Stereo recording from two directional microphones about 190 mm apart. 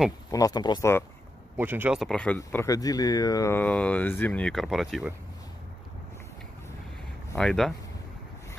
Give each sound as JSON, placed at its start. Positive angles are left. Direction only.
{"t": 0.3, "sound": "speech", "side_deg": 20}
{"t": 1.6, "sound": "speech", "side_deg": -10}
{"t": 2.0, "sound": "speech", "side_deg": 5}
{"t": 7.3, "sound": "speech", "side_deg": 5}